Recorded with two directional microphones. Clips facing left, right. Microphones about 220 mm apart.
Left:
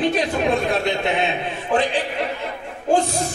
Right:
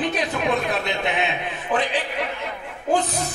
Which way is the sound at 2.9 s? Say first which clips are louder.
Left 3 dB; 30° left (ahead or behind).